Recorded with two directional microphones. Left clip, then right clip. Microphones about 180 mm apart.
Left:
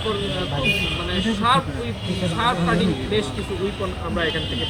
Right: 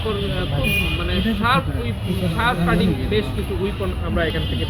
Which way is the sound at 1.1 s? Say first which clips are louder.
Left 1 dB; 45° left (ahead or behind).